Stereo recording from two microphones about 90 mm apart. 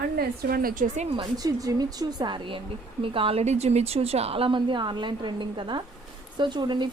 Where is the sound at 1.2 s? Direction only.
45° right (ahead or behind).